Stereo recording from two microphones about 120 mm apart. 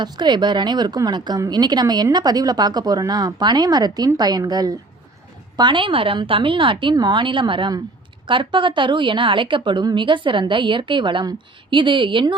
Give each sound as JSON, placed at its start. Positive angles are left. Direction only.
{"t": 0.0, "sound": "a woman's voice", "side_deg": -40}